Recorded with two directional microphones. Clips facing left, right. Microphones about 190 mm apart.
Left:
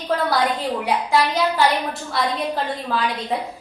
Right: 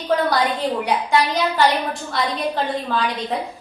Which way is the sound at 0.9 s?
Centre (ahead or behind).